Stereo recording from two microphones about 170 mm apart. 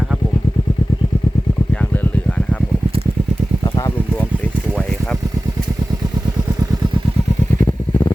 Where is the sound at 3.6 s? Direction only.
25° left (ahead or behind).